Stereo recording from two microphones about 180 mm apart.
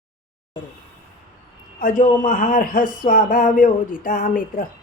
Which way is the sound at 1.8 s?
45° left (ahead or behind).